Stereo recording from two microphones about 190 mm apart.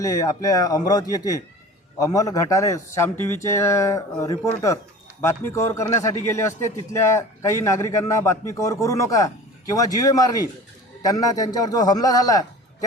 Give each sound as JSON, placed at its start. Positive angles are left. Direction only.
{"t": 0.0, "sound": "a man's voice", "side_deg": 15}